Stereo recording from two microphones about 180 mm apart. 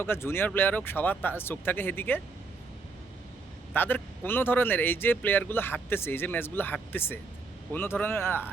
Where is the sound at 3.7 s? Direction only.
10° left (ahead or behind).